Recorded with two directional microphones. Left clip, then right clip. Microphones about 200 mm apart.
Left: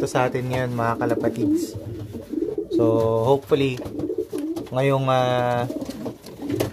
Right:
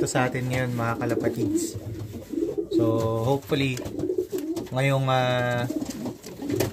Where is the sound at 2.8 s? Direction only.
20° left (ahead or behind).